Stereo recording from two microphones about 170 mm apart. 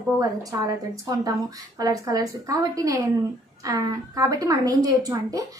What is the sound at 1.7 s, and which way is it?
A woman's voice, 20° right (ahead or behind).